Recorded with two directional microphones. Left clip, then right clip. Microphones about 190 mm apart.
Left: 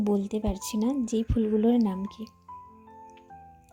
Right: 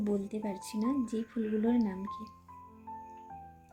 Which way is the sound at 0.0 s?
30° left (ahead or behind).